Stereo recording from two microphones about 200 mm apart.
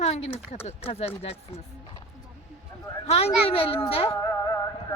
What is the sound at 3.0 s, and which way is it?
A child's voice, 30° left (ahead or behind).